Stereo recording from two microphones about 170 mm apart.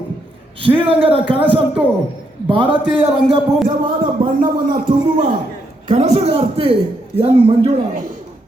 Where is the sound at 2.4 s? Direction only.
30° right (ahead or behind).